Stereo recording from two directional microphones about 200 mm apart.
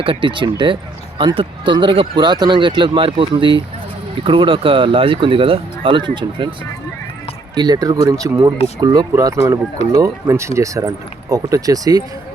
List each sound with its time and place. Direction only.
0.0 s speech: 25° right (ahead or behind)
7.5 s speech: 20° right (ahead or behind)